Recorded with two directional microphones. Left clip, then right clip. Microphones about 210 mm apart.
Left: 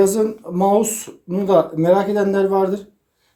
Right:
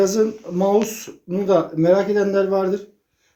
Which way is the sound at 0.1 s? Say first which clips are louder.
Even; 30° left (ahead or behind).